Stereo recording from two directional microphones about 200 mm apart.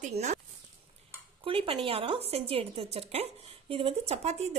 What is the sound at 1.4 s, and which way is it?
A woman's voice, 30° right (ahead or behind).